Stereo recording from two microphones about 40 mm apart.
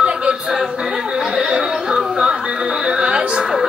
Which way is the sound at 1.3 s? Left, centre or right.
Centre.